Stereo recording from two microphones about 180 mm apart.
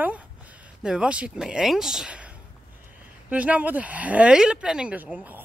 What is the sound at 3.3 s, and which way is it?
Speech, 10° right (ahead or behind).